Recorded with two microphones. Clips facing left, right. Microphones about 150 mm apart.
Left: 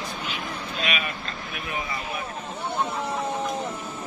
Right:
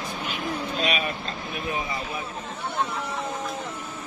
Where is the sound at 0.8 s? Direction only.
35° right (ahead or behind).